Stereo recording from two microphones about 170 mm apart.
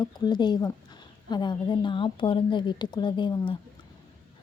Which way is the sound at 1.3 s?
25° left (ahead or behind).